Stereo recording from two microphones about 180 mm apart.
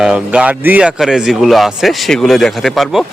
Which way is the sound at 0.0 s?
5° right (ahead or behind).